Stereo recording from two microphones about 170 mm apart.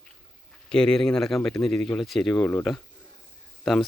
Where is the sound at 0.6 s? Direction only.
5° left (ahead or behind).